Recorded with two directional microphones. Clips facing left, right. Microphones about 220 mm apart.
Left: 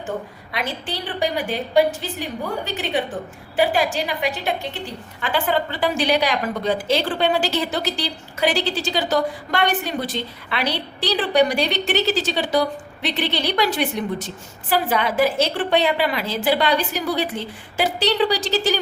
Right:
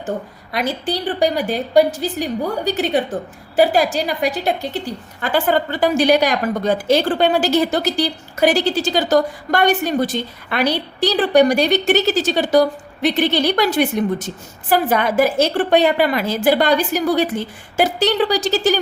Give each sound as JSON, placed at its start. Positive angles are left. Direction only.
{"t": 0.5, "sound": "a woman's voice", "side_deg": -40}